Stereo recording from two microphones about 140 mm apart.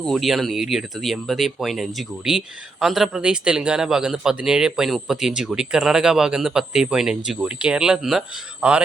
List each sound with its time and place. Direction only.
0.0 s a man's voice: centre (ahead or behind)